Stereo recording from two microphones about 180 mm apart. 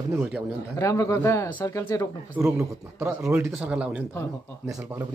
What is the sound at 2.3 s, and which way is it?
A man's voice, 10° right (ahead or behind).